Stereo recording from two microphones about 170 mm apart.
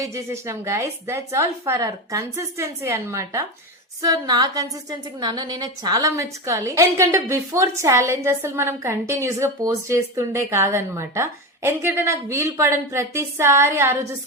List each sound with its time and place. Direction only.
0.0 s a woman's voice: 15° right (ahead or behind)